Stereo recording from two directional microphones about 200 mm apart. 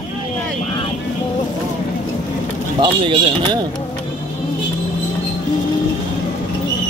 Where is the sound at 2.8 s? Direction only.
25° right (ahead or behind).